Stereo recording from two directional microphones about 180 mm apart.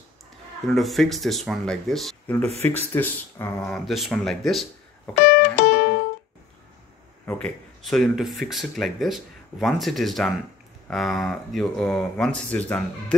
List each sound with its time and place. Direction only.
0.7 s speech: centre (ahead or behind)
2.6 s speech: 10° left (ahead or behind)
3.7 s speech: centre (ahead or behind)
5.2 s music: 65° left (ahead or behind)
7.2 s speech: 5° left (ahead or behind)